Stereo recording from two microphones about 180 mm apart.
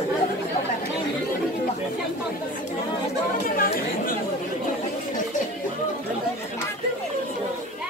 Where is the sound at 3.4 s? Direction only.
50° left (ahead or behind).